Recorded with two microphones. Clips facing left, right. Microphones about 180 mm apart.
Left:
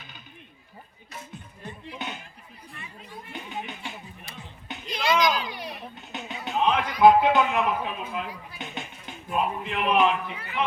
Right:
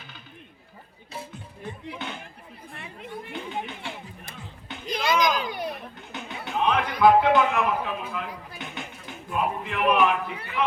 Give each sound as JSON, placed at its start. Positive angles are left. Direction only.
{"t": 2.0, "sound": "music", "side_deg": 15}
{"t": 2.6, "sound": "chatter", "side_deg": -60}
{"t": 3.3, "sound": "chatter", "side_deg": 15}
{"t": 4.9, "sound": "a sound", "side_deg": -45}
{"t": 6.0, "sound": "music", "side_deg": 20}
{"t": 6.4, "sound": "a sound", "side_deg": 20}
{"t": 7.0, "sound": "speech", "side_deg": 20}